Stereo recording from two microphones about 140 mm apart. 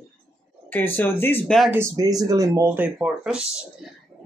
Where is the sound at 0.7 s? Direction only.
15° left (ahead or behind).